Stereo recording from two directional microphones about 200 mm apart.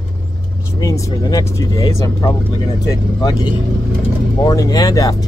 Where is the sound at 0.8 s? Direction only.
15° left (ahead or behind).